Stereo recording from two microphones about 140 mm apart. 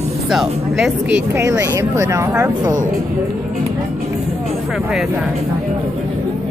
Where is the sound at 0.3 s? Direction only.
5° right (ahead or behind); by 2.7 s 25° right (ahead or behind).